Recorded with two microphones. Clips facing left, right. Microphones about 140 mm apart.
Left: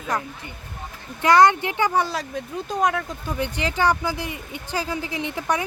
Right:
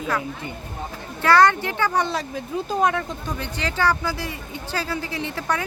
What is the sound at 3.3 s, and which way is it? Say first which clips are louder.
Speech: left 3 dB; 15° left (ahead or behind).